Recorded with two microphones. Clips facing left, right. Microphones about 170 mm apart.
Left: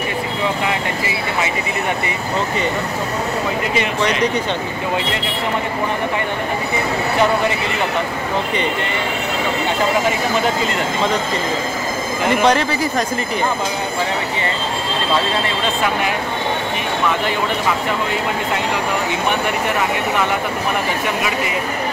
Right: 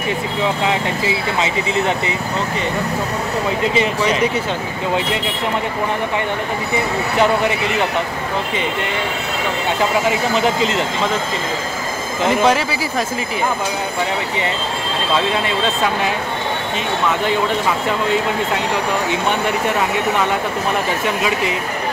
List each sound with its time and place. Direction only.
0.7 s speech: 20° right (ahead or behind)
12.4 s speech: 5° right (ahead or behind)